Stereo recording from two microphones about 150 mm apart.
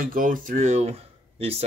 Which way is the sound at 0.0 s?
70° right (ahead or behind).